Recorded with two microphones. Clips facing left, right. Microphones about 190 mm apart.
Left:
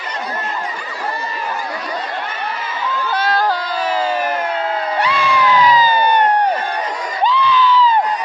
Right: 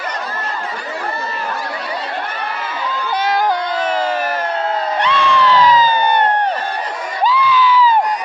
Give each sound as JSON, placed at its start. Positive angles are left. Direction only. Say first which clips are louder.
{"t": 3.2, "sound": "crowd", "louder": "right 2 dB", "side_deg": -15}
{"t": 4.9, "sound": "crowd", "louder": "right 2 dB", "side_deg": 10}
{"t": 7.3, "sound": "a sound", "louder": "even", "side_deg": -5}